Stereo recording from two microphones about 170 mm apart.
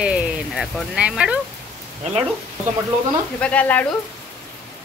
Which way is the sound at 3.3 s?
5° left (ahead or behind).